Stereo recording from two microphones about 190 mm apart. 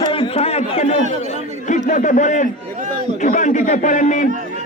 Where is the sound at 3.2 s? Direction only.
40° left (ahead or behind).